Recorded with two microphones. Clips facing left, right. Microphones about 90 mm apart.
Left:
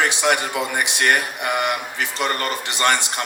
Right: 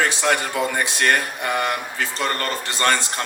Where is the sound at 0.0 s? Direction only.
20° left (ahead or behind).